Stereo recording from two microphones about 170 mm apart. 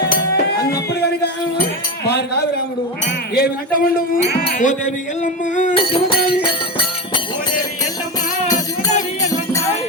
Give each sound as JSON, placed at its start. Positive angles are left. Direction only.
{"t": 0.0, "sound": "music", "side_deg": 55}
{"t": 3.3, "sound": "speech", "side_deg": 60}
{"t": 5.2, "sound": "music", "side_deg": 45}
{"t": 5.7, "sound": "music", "side_deg": 30}